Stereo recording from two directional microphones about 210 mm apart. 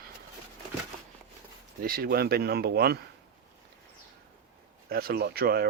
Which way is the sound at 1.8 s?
45° right (ahead or behind).